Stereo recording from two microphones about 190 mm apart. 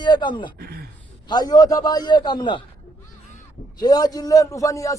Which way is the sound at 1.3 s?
20° left (ahead or behind).